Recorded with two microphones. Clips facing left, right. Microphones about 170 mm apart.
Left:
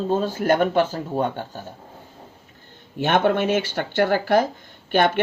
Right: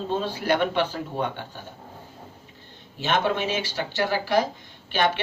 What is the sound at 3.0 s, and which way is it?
Speech, 55° left (ahead or behind).